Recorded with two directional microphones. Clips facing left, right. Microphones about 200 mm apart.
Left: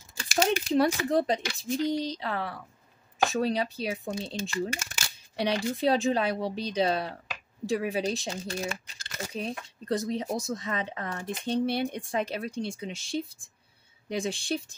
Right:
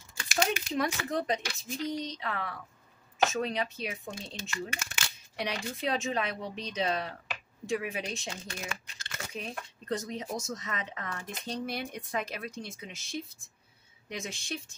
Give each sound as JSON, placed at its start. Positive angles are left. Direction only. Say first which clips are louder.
{"t": 0.2, "sound": "speech", "louder": "left 4 dB", "side_deg": 35}